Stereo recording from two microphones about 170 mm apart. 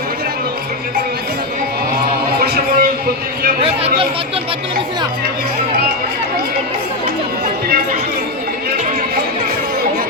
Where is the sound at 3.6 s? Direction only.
35° right (ahead or behind).